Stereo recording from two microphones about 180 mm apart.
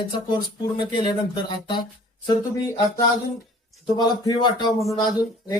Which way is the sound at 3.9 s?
25° left (ahead or behind).